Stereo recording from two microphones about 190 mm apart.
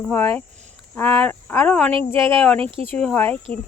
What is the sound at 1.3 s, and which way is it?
Speech, 10° left (ahead or behind).